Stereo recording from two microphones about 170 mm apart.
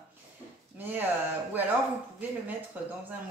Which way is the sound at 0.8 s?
10° right (ahead or behind).